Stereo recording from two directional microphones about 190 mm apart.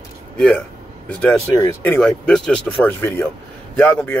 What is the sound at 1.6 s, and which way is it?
Speech, 15° left (ahead or behind).